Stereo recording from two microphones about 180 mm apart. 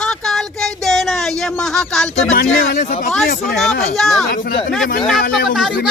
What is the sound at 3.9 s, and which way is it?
Speech, centre (ahead or behind).